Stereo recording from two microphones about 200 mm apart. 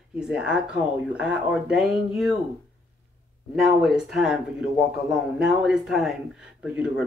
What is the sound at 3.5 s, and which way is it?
Speech, 5° right (ahead or behind).